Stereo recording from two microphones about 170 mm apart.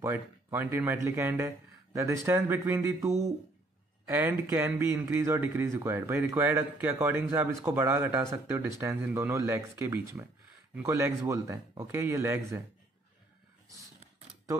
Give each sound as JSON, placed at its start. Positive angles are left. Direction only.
{"t": 0.0, "sound": "speech", "side_deg": -15}